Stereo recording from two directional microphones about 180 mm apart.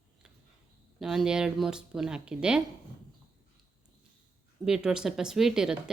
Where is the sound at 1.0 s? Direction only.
Centre (ahead or behind).